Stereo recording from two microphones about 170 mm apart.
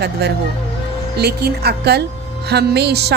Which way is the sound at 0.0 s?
75° right (ahead or behind).